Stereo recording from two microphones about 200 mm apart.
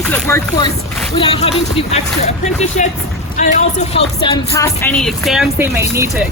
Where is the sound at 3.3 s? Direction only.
30° left (ahead or behind).